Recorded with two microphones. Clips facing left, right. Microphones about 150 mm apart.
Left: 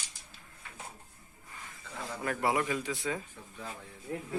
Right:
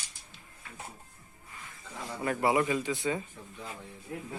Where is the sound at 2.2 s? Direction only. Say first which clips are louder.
Right 3 dB; centre (ahead or behind).